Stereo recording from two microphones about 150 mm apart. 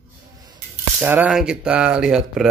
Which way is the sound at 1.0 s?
10° right (ahead or behind).